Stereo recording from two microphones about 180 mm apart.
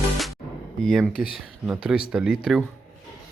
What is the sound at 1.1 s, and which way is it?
Speech, 55° left (ahead or behind).